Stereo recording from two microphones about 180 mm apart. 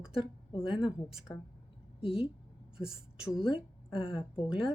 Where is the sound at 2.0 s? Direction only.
30° left (ahead or behind).